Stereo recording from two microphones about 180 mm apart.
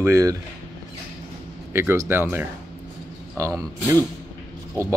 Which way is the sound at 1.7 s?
15° right (ahead or behind).